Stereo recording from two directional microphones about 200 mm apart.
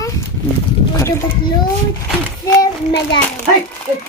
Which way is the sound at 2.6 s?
20° left (ahead or behind).